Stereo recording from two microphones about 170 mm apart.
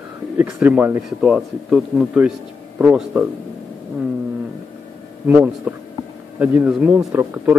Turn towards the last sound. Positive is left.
turn(degrees=-10)  # may be behind; listen again after turning